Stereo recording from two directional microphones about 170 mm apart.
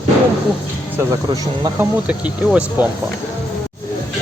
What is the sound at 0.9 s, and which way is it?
Speech, 20° right (ahead or behind).